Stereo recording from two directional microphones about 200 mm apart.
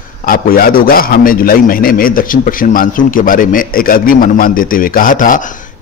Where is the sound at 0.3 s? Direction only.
45° left (ahead or behind).